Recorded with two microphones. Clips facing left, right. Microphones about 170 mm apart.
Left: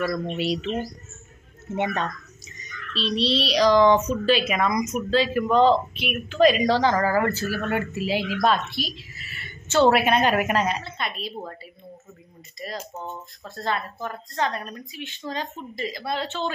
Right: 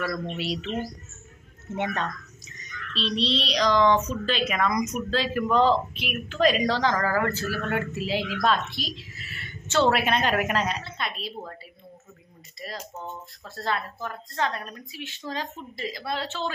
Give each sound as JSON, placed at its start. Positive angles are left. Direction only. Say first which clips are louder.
{"t": 0.1, "sound": "a child's voice", "louder": "left 4 dB", "side_deg": 0}
{"t": 1.8, "sound": "a child's voice", "louder": "left 3 dB", "side_deg": 5}
{"t": 12.5, "sound": "a child's voice", "louder": "left 4 dB", "side_deg": 0}
{"t": 12.9, "sound": "speech", "louder": "left 2 dB", "side_deg": 20}
{"t": 14.0, "sound": "a child's voice", "louder": "left 3 dB", "side_deg": 0}